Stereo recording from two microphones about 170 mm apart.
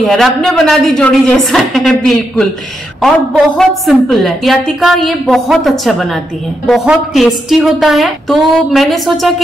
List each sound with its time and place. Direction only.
0.0 s a woman's voice: centre (ahead or behind)